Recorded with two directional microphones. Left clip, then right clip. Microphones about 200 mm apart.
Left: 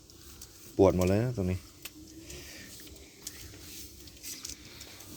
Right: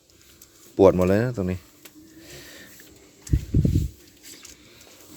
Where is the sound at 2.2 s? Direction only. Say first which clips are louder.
Right 4 dB; 25° right (ahead or behind).